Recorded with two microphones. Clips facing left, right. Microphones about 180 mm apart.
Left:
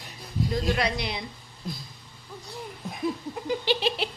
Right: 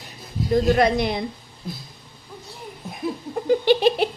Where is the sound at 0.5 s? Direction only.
50° right (ahead or behind).